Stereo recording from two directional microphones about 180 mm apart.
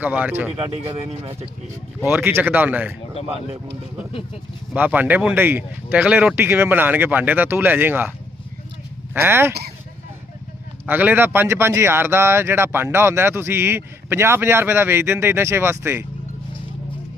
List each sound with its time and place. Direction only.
0.0 s speech: 10° right (ahead or behind)
0.5 s speech: 30° right (ahead or behind)
2.0 s speech: 10° right (ahead or behind)
4.7 s speech: 10° right (ahead or behind)
9.1 s speech: 15° right (ahead or behind)
10.8 s speech: 10° right (ahead or behind)